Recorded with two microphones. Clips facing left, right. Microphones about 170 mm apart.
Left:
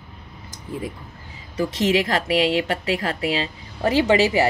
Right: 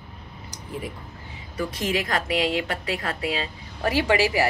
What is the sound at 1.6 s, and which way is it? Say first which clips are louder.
Speech: left 6 dB; 30° left (ahead or behind).